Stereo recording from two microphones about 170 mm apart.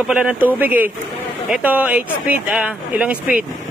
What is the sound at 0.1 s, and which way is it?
Speech, 5° right (ahead or behind).